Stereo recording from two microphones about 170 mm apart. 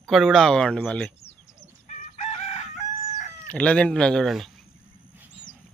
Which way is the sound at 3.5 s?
5° left (ahead or behind).